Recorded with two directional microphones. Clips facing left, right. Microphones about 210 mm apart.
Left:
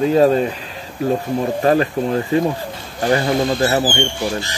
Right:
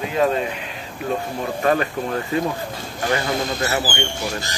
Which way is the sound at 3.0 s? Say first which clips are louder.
Left 6 dB; 35° left (ahead or behind).